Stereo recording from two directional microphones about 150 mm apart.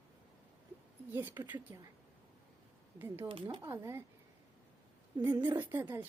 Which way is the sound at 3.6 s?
15° right (ahead or behind).